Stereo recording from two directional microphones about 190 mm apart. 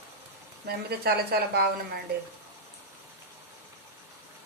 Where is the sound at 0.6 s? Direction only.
55° right (ahead or behind).